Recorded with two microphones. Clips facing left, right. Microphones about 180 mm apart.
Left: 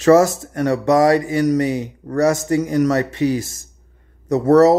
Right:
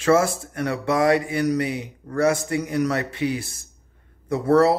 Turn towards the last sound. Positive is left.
turn(degrees=40)  # may be behind; listen again after turning